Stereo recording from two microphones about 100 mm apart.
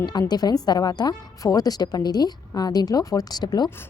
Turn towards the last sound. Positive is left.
turn(degrees=45)  # may be behind; listen again after turning